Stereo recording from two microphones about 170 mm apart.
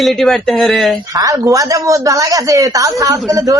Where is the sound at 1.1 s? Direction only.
20° right (ahead or behind).